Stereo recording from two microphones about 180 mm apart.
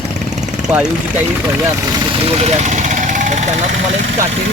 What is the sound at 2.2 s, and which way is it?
Vehicle, 35° right (ahead or behind).